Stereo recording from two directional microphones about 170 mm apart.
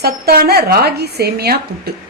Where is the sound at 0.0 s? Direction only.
65° right (ahead or behind).